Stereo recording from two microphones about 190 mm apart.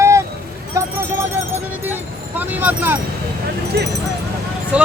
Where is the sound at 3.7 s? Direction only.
60° right (ahead or behind).